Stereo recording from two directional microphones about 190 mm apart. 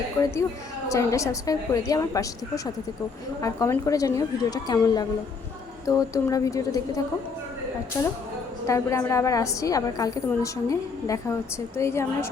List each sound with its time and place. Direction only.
0.2 s a woman's voice: 15° left (ahead or behind)
3.4 s a woman's voice: 15° left (ahead or behind)
8.6 s a woman's voice: 15° left (ahead or behind)